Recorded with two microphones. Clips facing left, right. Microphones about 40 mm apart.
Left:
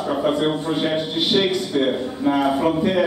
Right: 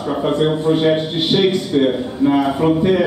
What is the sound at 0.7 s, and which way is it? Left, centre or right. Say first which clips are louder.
Speech: right 6 dB; right.